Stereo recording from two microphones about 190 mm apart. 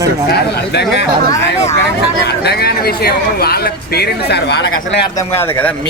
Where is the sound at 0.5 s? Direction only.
60° left (ahead or behind).